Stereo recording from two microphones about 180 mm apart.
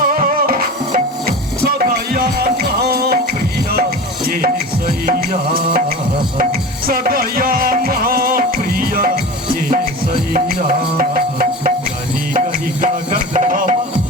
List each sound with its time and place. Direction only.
0.0 s music: 50° right (ahead or behind)
12.8 s music: 45° right (ahead or behind)